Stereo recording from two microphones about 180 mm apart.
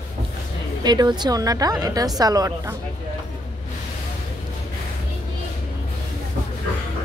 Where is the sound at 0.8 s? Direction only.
25° right (ahead or behind).